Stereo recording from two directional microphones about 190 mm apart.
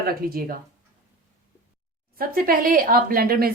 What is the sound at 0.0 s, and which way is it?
Speech, 50° right (ahead or behind).